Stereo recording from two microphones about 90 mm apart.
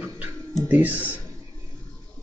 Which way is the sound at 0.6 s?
20° right (ahead or behind).